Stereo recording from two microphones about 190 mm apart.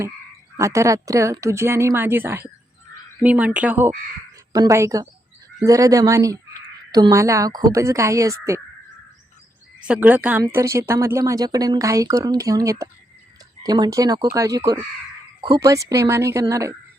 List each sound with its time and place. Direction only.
0.5 s speech: 15° right (ahead or behind)
9.8 s speech: 10° right (ahead or behind)